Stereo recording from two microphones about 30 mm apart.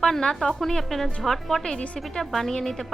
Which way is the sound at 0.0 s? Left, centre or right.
Centre.